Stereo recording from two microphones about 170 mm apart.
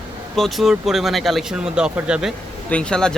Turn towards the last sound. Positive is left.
turn(degrees=5)  # may be behind; listen again after turning